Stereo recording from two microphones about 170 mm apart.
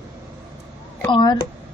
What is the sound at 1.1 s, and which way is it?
Speech, 30° left (ahead or behind).